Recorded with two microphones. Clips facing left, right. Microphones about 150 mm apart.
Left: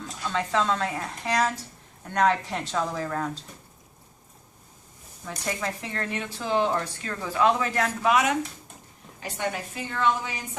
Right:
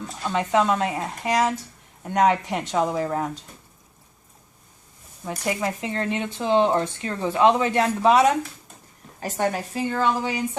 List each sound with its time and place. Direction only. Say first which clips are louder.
0.2 s speech: right 5 dB; 15° right (ahead or behind)
5.4 s a woman's voice: right 5 dB; 20° right (ahead or behind)